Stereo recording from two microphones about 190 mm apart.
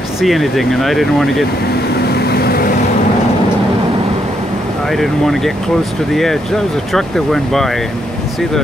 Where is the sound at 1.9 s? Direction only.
55° left (ahead or behind).